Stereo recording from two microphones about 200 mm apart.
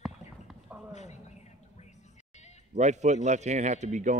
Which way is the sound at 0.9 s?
35° left (ahead or behind).